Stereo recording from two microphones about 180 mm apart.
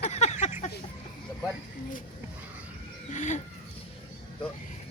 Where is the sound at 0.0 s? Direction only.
40° left (ahead or behind).